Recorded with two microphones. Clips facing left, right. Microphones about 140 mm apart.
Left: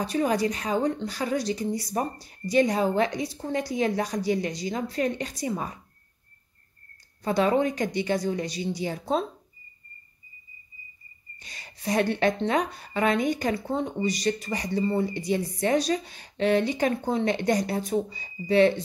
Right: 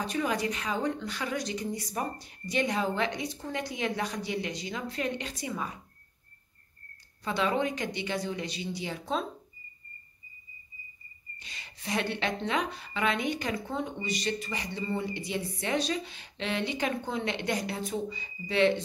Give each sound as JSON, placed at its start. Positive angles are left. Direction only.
{"t": 0.0, "sound": "speech", "side_deg": 35}
{"t": 7.2, "sound": "speech", "side_deg": 40}
{"t": 11.3, "sound": "a woman's voice", "side_deg": 40}